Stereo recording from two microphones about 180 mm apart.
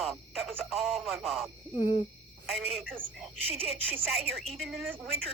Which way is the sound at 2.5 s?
Centre (ahead or behind).